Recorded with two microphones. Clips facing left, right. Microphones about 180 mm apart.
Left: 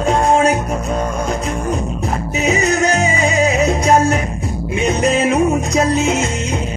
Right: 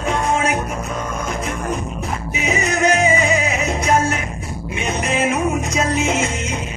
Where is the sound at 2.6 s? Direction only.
35° left (ahead or behind).